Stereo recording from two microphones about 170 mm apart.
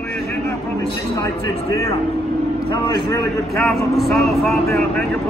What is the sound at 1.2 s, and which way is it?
Speech, 20° left (ahead or behind).